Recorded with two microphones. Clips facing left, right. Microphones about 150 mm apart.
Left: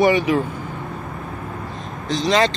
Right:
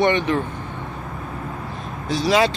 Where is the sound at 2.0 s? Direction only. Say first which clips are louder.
Even; 5° right (ahead or behind).